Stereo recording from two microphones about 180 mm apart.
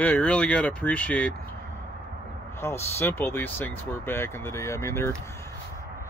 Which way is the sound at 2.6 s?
15° left (ahead or behind).